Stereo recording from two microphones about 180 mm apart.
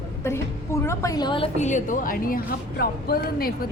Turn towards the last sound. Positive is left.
turn(degrees=55)  # may be behind; listen again after turning